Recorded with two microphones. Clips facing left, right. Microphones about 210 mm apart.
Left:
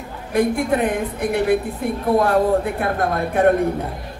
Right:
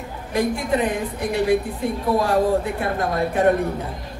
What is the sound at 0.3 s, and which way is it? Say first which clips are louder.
Speech: left 3 dB; 55° left (ahead or behind).